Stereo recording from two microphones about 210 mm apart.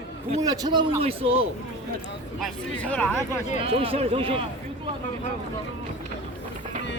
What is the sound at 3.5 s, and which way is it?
Speech, 25° right (ahead or behind).